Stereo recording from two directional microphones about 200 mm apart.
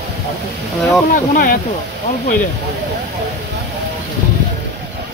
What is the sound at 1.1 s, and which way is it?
Speech, 40° left (ahead or behind).